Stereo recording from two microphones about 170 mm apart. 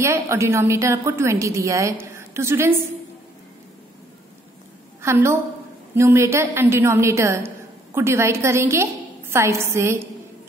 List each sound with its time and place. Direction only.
0.0 s a woman's voice: 15° right (ahead or behind)
5.0 s a woman's voice: 15° right (ahead or behind)